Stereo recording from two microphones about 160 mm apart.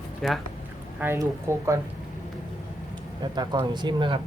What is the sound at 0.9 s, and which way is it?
Speech, 15° right (ahead or behind).